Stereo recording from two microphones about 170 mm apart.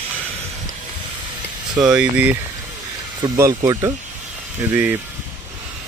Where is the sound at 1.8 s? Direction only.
5° right (ahead or behind).